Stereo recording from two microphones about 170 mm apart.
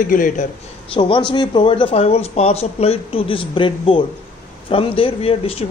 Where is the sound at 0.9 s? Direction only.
30° left (ahead or behind).